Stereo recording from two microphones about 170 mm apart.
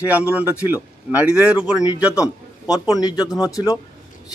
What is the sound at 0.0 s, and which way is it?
Speech, 10° right (ahead or behind).